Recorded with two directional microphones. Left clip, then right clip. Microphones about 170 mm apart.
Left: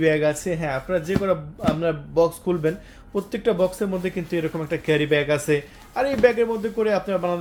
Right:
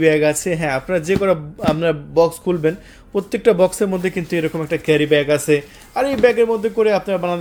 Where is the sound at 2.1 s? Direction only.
35° right (ahead or behind).